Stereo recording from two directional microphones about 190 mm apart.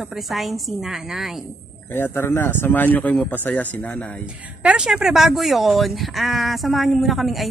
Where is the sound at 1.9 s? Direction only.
10° left (ahead or behind).